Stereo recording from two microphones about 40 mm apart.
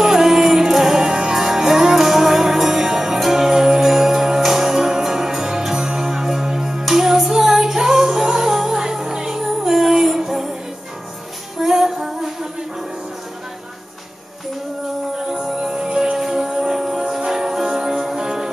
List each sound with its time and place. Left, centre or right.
0.0 s music: centre
11.5 s music: centre
15.1 s music: centre